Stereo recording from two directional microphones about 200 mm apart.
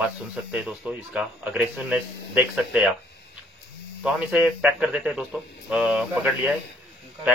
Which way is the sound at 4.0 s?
5° right (ahead or behind).